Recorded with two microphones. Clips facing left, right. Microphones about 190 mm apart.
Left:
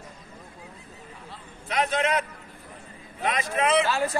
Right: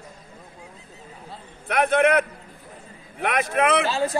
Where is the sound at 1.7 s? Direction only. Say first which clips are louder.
Right 6 dB; 55° right (ahead or behind).